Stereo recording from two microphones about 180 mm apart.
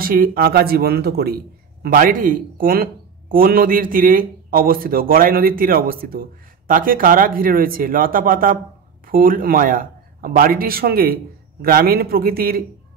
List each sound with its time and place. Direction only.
0.0 s a man's voice: 55° right (ahead or behind)